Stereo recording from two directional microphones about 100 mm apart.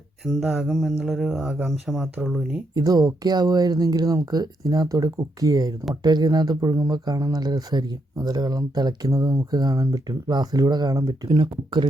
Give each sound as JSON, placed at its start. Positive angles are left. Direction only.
{"t": 0.3, "sound": "speech", "side_deg": 0}
{"t": 2.7, "sound": "speech", "side_deg": -40}